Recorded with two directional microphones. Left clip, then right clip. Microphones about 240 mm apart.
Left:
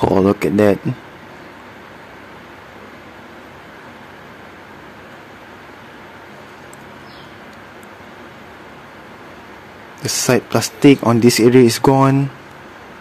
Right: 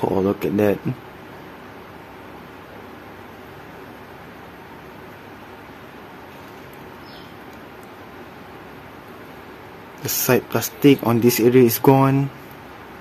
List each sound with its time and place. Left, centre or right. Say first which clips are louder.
0.0 s speech: left 6 dB; left
10.0 s speech: left 3 dB; centre